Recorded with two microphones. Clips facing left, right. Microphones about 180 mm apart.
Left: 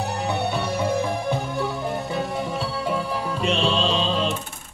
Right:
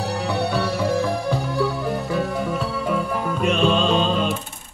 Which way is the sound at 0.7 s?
20° left (ahead or behind).